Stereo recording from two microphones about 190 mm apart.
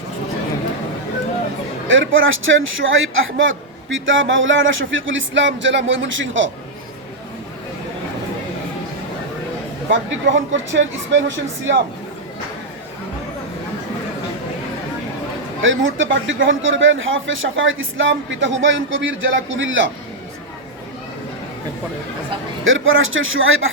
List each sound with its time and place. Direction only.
1.9 s speech: 90° right
9.9 s speech: 75° right (ahead or behind)
15.6 s speech: 90° right
22.6 s speech: 90° right